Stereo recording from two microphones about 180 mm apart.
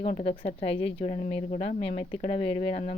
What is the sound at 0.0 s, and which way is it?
Speech, 40° left (ahead or behind).